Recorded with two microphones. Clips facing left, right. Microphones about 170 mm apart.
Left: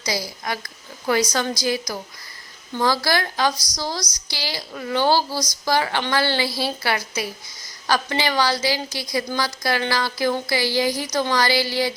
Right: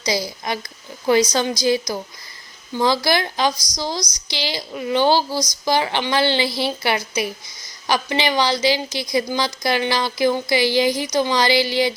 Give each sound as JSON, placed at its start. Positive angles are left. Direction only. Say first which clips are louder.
{"t": 0.0, "sound": "a woman's voice", "louder": "right 4 dB", "side_deg": -20}